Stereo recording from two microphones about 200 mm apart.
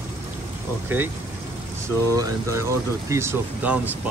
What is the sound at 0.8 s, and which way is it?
Speech, 10° right (ahead or behind).